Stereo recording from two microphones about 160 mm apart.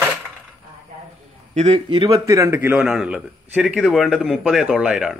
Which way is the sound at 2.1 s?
20° right (ahead or behind).